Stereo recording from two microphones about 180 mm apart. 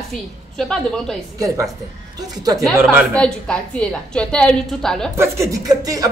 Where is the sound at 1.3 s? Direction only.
20° right (ahead or behind).